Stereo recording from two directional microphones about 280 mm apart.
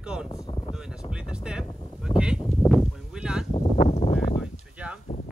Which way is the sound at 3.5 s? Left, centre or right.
Left.